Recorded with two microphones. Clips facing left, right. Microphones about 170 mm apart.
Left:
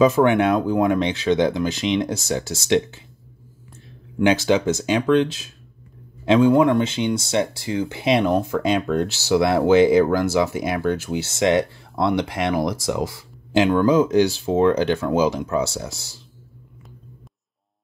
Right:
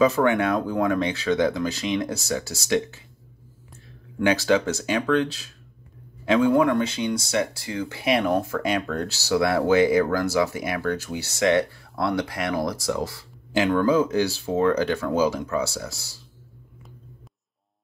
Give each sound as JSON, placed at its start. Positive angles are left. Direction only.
{"t": 0.0, "sound": "speech", "side_deg": 20}
{"t": 4.2, "sound": "speech", "side_deg": 20}